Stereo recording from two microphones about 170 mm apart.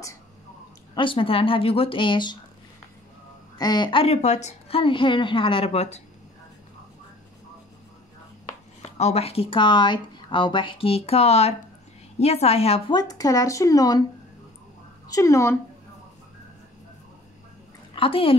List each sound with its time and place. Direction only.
0.9 s speech: 30° left (ahead or behind)
3.5 s speech: 25° left (ahead or behind); by 6.0 s 40° left (ahead or behind)
8.9 s speech: 40° left (ahead or behind)
12.9 s speech: 20° left (ahead or behind)
15.0 s speech: 20° left (ahead or behind)
17.9 s speech: 30° left (ahead or behind)